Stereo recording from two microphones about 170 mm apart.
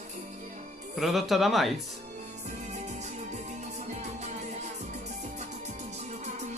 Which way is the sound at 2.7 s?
45° right (ahead or behind).